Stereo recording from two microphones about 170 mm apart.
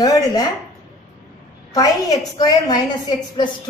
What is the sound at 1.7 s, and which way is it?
A woman's voice, 20° left (ahead or behind).